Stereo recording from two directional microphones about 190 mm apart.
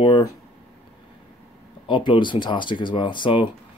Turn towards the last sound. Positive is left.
turn(degrees=25)  # may be behind; listen again after turning